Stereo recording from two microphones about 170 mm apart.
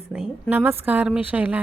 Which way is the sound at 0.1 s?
5° right (ahead or behind).